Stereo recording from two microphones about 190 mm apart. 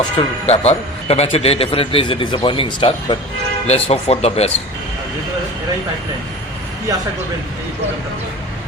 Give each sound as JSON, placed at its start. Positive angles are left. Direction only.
{"t": 0.0, "sound": "a man's voice", "side_deg": 30}